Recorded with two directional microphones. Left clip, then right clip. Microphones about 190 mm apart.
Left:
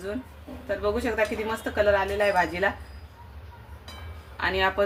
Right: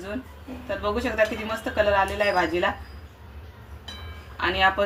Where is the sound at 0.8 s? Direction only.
35° left (ahead or behind).